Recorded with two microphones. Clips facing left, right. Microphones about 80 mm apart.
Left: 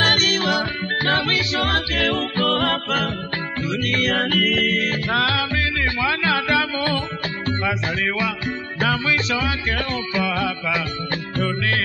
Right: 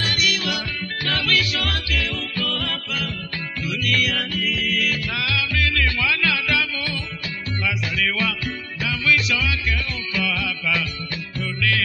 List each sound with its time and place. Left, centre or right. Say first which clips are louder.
0.0 s music: left 5 dB; left
3.6 s music: left 1 dB; left
5.6 s music: left 1 dB; left
8.8 s music: left 1 dB; left